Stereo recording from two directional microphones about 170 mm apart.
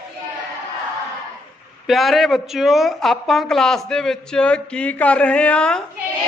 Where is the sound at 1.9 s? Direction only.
Centre (ahead or behind).